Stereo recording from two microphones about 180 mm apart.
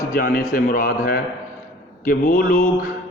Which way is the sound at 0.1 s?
55° left (ahead or behind).